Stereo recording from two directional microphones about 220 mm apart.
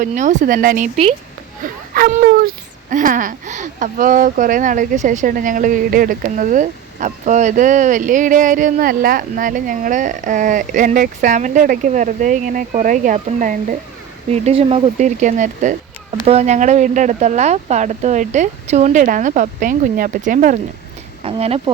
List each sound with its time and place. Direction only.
0.0 s speech: 35° right (ahead or behind)